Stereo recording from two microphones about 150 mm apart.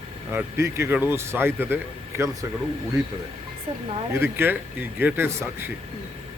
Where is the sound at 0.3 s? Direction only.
15° right (ahead or behind).